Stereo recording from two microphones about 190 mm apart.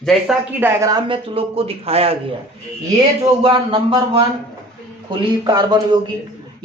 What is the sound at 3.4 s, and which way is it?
Speech, 25° right (ahead or behind).